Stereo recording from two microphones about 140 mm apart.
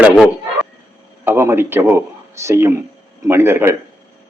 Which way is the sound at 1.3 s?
15° right (ahead or behind).